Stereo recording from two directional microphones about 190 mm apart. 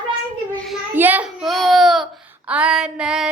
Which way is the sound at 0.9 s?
10° right (ahead or behind).